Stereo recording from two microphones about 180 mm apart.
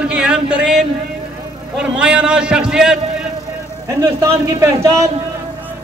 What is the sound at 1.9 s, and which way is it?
A man's voice, 5° right (ahead or behind).